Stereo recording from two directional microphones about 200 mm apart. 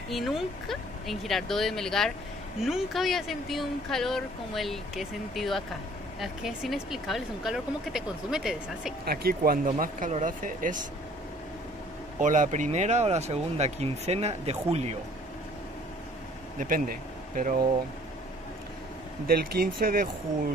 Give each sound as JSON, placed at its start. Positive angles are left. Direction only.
{"t": 0.1, "sound": "speech", "side_deg": 0}
{"t": 9.0, "sound": "speech", "side_deg": -50}
{"t": 12.2, "sound": "speech", "side_deg": -40}
{"t": 16.5, "sound": "speech", "side_deg": -45}
{"t": 19.2, "sound": "speech", "side_deg": -50}